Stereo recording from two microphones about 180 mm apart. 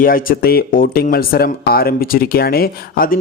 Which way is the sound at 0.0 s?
50° left (ahead or behind).